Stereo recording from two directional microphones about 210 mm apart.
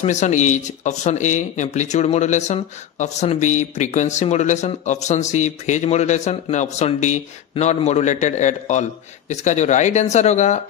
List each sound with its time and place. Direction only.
0.0 s speech: 35° left (ahead or behind)